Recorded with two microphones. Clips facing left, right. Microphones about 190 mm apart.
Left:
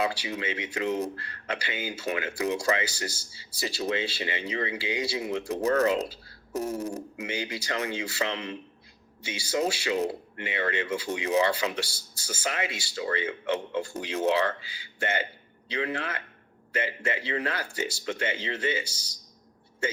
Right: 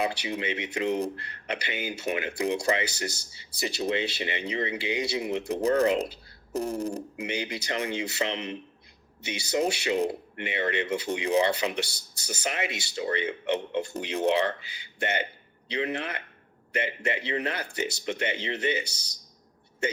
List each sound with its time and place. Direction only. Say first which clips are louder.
0.0 s speech: even; 20° right (ahead or behind)